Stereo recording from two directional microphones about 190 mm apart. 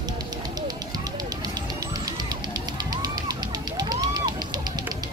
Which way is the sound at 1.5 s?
20° right (ahead or behind).